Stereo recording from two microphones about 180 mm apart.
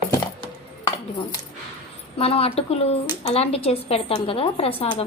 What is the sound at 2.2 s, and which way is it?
Speech, 35° left (ahead or behind).